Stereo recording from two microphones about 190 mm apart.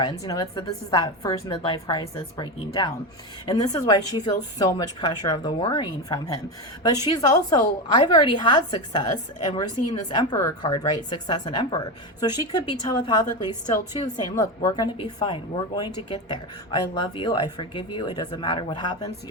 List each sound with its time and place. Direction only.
0.0 s a woman's voice: 20° left (ahead or behind)